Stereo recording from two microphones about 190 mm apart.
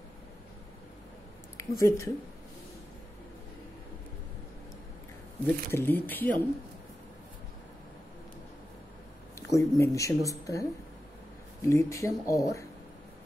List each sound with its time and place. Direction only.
1.6 s speech: 15° left (ahead or behind)
5.7 s speech: 10° left (ahead or behind)
9.5 s speech: 15° left (ahead or behind)